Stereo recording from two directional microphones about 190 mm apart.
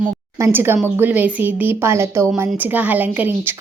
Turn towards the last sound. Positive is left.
turn(degrees=-10)  # may be behind; listen again after turning